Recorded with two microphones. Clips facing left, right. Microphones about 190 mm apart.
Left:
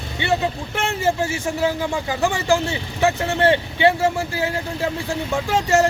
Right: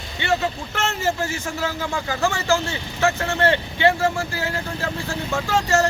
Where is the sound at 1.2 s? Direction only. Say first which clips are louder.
Left 4 dB; 20° left (ahead or behind).